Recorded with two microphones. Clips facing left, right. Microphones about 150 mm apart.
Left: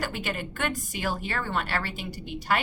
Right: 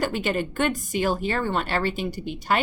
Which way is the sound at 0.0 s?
25° right (ahead or behind).